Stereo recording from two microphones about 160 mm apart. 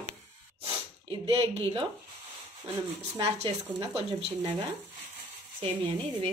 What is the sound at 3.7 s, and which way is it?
Speech, 35° right (ahead or behind).